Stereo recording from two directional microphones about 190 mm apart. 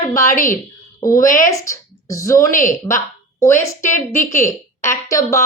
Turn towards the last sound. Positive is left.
turn(degrees=15)  # may be behind; listen again after turning